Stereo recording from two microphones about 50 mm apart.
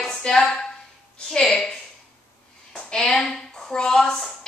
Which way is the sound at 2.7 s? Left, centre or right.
Centre.